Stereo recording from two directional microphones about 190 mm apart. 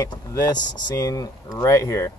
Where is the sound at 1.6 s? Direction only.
15° left (ahead or behind).